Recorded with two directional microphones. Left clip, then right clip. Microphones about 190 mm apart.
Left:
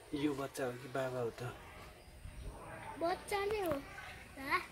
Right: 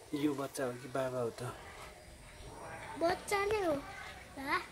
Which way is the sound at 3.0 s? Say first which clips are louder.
Right 4 dB; 45° right (ahead or behind).